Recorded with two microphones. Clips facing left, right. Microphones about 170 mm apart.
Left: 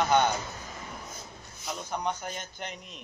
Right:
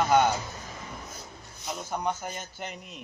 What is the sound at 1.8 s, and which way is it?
A man's voice, 5° right (ahead or behind).